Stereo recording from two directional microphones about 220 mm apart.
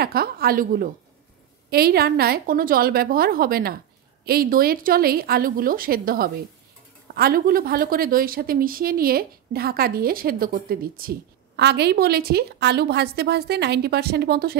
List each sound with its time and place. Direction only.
0.0 s a woman's voice: 45° right (ahead or behind)